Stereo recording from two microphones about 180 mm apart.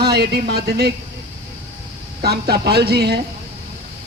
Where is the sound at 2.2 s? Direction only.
60° right (ahead or behind).